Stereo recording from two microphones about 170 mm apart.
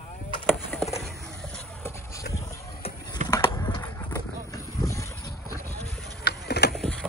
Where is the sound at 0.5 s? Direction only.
10° left (ahead or behind).